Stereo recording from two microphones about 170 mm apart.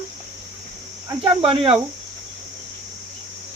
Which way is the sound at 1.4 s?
35° right (ahead or behind).